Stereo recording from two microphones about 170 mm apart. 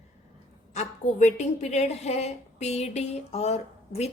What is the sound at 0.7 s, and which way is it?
A woman's voice, 40° left (ahead or behind).